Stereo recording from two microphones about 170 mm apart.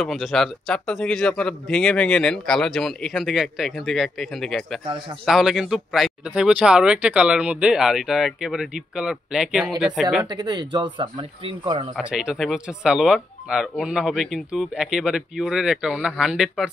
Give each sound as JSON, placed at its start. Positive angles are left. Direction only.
{"t": 0.0, "sound": "speech", "side_deg": 0}
{"t": 10.3, "sound": "speech", "side_deg": -25}
{"t": 12.0, "sound": "speech", "side_deg": -5}